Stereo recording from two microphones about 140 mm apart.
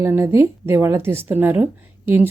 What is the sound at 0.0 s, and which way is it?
A woman's voice, 20° right (ahead or behind).